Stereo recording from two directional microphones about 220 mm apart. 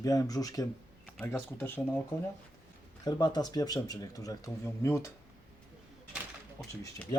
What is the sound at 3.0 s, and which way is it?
Speech, 20° left (ahead or behind).